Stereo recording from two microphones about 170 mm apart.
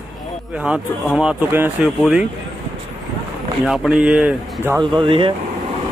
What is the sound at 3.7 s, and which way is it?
Speech, 5° right (ahead or behind).